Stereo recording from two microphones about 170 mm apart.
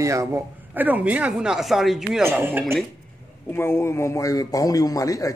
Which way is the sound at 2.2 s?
10° right (ahead or behind).